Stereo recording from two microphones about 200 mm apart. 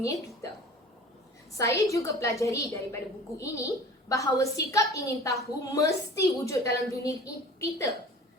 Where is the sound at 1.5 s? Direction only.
15° left (ahead or behind).